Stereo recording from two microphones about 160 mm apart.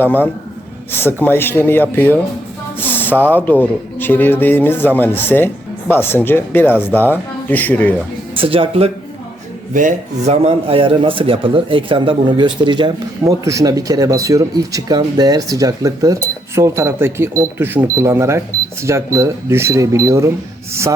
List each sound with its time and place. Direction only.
0.0 s speech: 10° left (ahead or behind)
8.4 s speech: 35° right (ahead or behind)
9.7 s a man's voice: 50° right (ahead or behind); by 20.3 s 20° right (ahead or behind)